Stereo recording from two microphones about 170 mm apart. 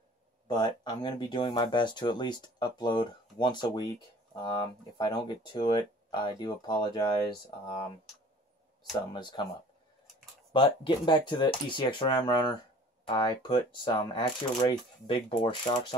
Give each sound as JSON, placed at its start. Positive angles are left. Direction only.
{"t": 0.5, "sound": "speech", "side_deg": 25}
{"t": 9.1, "sound": "speech", "side_deg": 25}
{"t": 10.5, "sound": "speech", "side_deg": 30}